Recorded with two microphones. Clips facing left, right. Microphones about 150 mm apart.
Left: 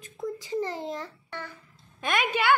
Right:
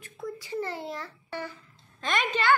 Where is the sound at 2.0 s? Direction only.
10° left (ahead or behind).